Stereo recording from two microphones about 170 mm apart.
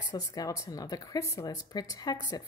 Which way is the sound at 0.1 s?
20° left (ahead or behind).